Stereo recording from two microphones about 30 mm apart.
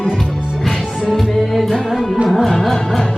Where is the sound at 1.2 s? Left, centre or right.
Centre.